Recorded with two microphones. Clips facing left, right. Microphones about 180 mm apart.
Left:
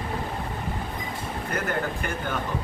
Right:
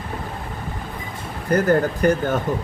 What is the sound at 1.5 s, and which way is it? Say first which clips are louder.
Speech: right 12 dB; 40° right (ahead or behind).